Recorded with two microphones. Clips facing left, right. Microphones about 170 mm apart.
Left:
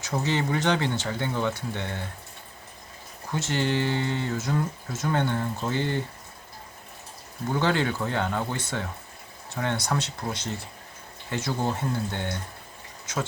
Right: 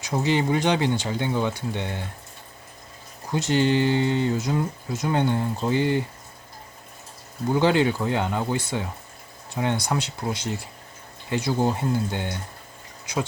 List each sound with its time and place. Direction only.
0.0 s speech: 15° right (ahead or behind)
3.3 s speech: 15° right (ahead or behind)
7.5 s speech: 15° right (ahead or behind)